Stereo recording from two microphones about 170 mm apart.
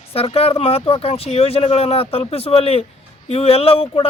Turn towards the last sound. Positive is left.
turn(degrees=35)  # may be behind; listen again after turning